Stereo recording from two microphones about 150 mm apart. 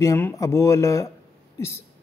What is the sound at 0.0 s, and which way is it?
Speech, 20° left (ahead or behind).